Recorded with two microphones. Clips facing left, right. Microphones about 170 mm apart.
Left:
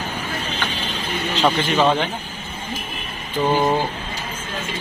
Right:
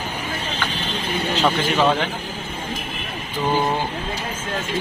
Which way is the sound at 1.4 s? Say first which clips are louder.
Left 2 dB; 10° left (ahead or behind).